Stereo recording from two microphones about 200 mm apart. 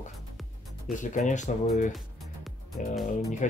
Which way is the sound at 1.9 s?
Centre (ahead or behind).